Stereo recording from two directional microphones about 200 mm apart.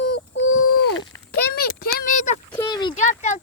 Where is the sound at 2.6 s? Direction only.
20° left (ahead or behind).